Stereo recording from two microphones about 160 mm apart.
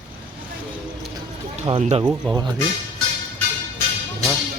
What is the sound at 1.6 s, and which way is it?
Speech, 35° right (ahead or behind).